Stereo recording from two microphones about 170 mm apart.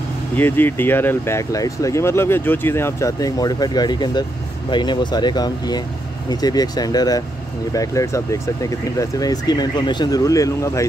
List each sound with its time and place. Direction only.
0.4 s speech: 10° left (ahead or behind)